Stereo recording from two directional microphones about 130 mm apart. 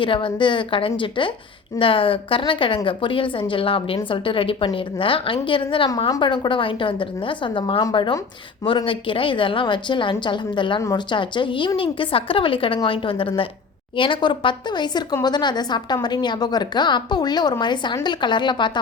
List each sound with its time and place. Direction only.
0.0 s a woman's voice: 40° left (ahead or behind)